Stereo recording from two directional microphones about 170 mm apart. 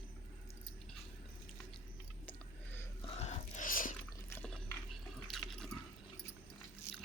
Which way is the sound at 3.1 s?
40° left (ahead or behind).